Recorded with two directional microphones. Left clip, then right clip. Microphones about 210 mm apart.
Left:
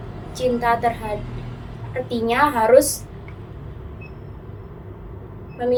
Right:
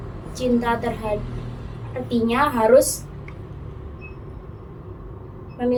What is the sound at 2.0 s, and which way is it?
Speech, 25° left (ahead or behind).